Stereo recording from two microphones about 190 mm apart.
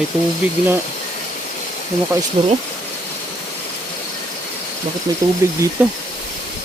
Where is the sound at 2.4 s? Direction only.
30° right (ahead or behind).